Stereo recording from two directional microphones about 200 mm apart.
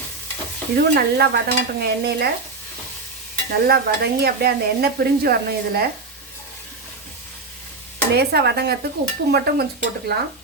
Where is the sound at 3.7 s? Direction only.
50° right (ahead or behind).